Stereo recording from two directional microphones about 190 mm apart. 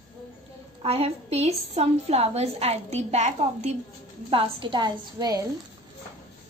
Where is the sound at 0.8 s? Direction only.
30° right (ahead or behind).